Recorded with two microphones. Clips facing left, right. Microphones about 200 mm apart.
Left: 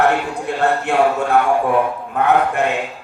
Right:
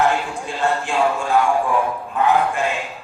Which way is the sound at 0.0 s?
60° left (ahead or behind).